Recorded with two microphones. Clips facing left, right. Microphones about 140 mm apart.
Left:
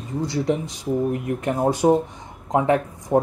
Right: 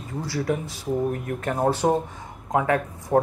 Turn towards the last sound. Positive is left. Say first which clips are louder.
# left 3 dB
turn(degrees=20)  # may be behind; listen again after turning